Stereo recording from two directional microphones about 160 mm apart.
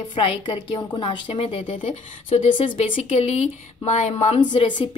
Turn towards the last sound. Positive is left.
turn(degrees=30)  # may be behind; listen again after turning